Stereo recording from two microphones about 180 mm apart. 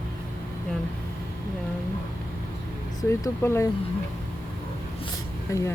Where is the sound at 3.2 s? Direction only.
15° left (ahead or behind).